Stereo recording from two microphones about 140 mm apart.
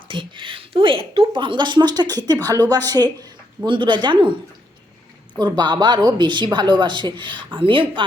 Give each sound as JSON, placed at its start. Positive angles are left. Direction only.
{"t": 0.1, "sound": "a woman's voice", "side_deg": -35}
{"t": 5.4, "sound": "a woman's voice", "side_deg": -30}